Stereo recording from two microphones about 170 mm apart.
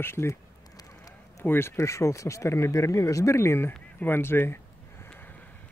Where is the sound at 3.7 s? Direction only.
10° left (ahead or behind).